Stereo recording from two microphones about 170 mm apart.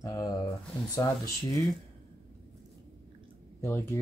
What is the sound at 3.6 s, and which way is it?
Speech, 15° left (ahead or behind).